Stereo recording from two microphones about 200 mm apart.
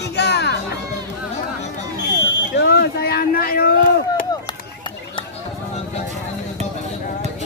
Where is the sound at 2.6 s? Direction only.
50° left (ahead or behind).